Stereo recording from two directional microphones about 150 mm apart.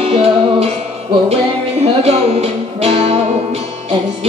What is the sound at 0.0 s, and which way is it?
Music, 40° right (ahead or behind).